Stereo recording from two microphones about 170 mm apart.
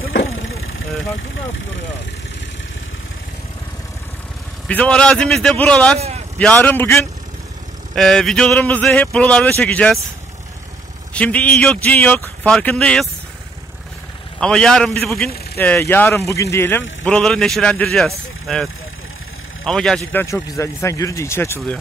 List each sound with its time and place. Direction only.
4.6 s speech: 10° left (ahead or behind)
5.9 s vehicle: 40° right (ahead or behind)
6.3 s a man's voice: 5° left (ahead or behind)
7.9 s speech: centre (ahead or behind)
11.1 s a man's voice: 10° left (ahead or behind)
14.4 s a man's voice: 5° left (ahead or behind)
17.0 s a man's voice: 5° left (ahead or behind)